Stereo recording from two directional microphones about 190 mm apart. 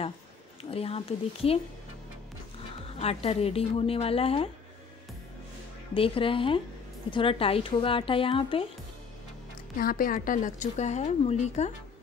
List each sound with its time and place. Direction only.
0.6 s speech: 30° left (ahead or behind)
2.8 s speech: 30° left (ahead or behind)
5.9 s speech: 30° left (ahead or behind)
9.8 s speech: 50° left (ahead or behind)